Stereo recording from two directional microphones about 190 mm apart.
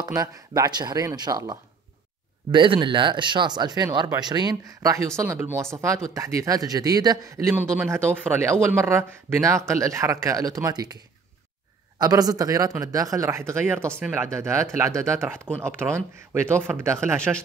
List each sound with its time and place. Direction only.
0.0 s a man's voice: 20° right (ahead or behind)
12.0 s a man's voice: 20° right (ahead or behind)